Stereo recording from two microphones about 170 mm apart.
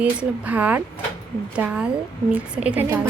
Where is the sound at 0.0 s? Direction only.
10° right (ahead or behind).